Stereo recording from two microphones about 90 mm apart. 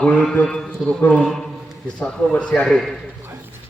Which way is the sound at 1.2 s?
5° left (ahead or behind).